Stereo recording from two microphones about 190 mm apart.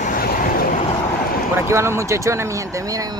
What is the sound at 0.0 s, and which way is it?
Vehicle, 50° left (ahead or behind).